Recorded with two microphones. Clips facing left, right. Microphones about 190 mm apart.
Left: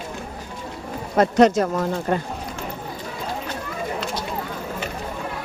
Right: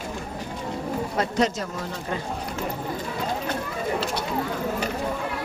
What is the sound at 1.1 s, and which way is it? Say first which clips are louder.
Speech: left 10 dB; 55° left (ahead or behind).